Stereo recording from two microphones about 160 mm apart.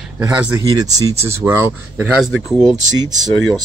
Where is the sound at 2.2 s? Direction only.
Centre (ahead or behind).